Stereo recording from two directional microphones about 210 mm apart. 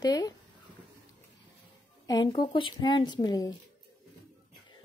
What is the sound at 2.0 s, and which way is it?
A child's voice, 20° left (ahead or behind).